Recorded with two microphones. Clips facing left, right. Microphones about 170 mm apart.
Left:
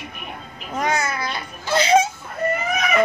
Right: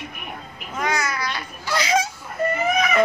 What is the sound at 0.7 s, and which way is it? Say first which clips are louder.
Babbling: left 2 dB; 25° left (ahead or behind).